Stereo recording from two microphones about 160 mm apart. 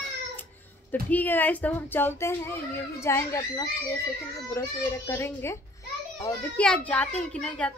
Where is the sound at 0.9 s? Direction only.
10° left (ahead or behind).